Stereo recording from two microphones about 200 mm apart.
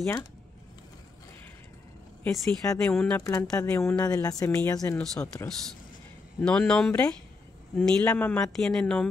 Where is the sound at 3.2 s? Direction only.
15° left (ahead or behind).